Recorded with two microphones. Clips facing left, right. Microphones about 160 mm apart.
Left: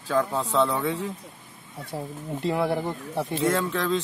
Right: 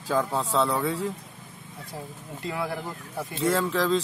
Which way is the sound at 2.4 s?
25° left (ahead or behind).